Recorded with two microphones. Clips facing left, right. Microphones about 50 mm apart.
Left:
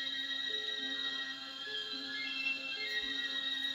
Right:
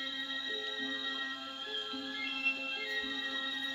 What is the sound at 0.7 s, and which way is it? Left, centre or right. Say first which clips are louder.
Music: right 2 dB; right.